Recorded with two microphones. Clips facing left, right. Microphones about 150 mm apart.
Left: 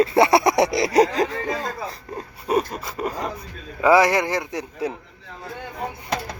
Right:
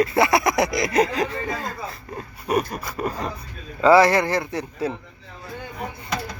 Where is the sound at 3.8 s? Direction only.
15° left (ahead or behind).